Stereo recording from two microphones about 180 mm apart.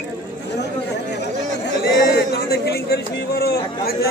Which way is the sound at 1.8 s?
60° left (ahead or behind).